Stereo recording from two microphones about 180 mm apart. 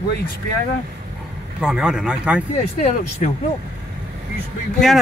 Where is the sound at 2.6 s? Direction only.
40° left (ahead or behind).